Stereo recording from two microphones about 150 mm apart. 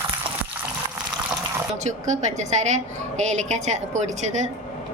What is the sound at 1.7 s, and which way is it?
A woman's voice, 50° right (ahead or behind).